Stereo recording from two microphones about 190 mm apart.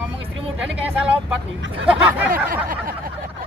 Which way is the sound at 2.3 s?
50° right (ahead or behind).